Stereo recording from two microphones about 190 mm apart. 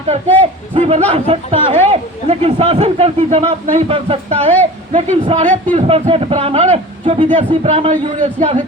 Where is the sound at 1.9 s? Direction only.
30° right (ahead or behind).